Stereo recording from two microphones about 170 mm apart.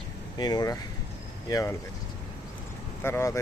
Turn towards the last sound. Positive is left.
turn(degrees=15)  # may be behind; listen again after turning